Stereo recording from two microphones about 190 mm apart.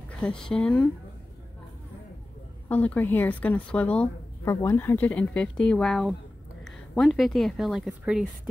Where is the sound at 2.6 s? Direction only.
10° left (ahead or behind).